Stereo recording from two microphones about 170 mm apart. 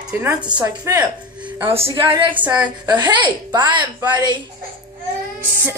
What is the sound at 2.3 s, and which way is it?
Speech, 10° right (ahead or behind).